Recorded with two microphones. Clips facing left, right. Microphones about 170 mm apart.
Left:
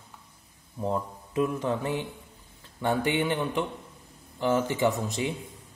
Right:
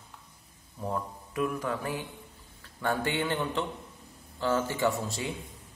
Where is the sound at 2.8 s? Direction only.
20° left (ahead or behind).